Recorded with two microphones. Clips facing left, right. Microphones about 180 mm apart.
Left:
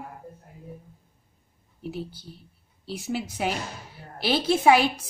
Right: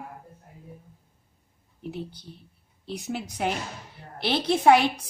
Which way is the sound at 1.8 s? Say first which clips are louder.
Left 1 dB; 5° left (ahead or behind).